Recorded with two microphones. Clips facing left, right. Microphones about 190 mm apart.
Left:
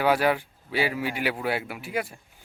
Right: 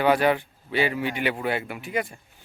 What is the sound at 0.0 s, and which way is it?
Speech, 5° left (ahead or behind).